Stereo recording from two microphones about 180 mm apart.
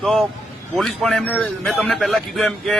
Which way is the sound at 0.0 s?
Centre (ahead or behind).